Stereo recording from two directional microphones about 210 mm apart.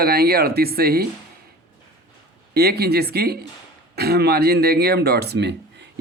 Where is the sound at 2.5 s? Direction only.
50° right (ahead or behind).